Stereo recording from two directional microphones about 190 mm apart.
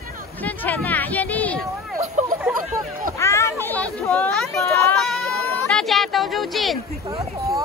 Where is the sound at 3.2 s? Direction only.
15° left (ahead or behind).